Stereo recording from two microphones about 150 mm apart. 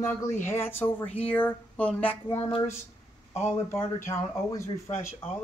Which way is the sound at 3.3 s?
45° left (ahead or behind).